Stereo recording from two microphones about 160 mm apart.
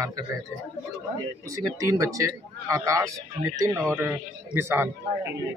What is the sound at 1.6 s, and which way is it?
A man's voice, 20° right (ahead or behind).